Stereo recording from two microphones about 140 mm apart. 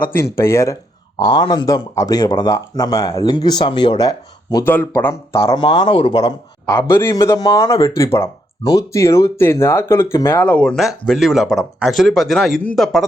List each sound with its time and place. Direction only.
0.2 s speech: 20° left (ahead or behind)
1.2 s speech: 30° left (ahead or behind)
4.6 s speech: 15° left (ahead or behind)
5.5 s speech: 35° left (ahead or behind)
6.7 s speech: 15° left (ahead or behind)